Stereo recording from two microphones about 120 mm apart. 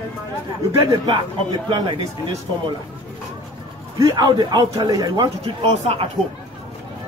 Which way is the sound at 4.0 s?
35° right (ahead or behind).